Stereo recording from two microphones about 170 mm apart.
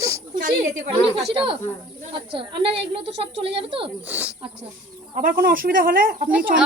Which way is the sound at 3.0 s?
90° right.